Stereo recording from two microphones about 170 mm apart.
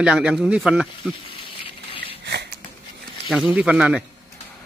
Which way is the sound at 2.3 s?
90° right.